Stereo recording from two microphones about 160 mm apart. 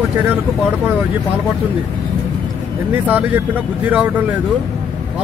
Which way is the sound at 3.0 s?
10° right (ahead or behind).